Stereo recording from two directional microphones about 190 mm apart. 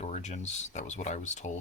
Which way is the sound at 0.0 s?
35° left (ahead or behind).